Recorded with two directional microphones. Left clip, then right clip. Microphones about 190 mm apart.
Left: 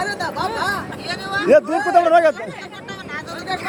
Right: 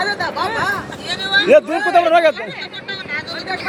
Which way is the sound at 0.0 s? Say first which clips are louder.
Right 3 dB; 80° left.